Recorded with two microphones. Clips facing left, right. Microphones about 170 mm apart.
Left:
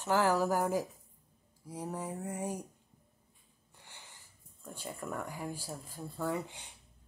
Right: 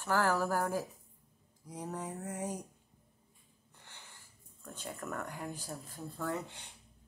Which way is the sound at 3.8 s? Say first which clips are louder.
Left 1 dB; 15° left (ahead or behind).